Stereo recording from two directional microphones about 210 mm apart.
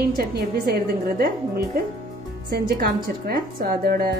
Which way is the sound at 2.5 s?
45° right (ahead or behind).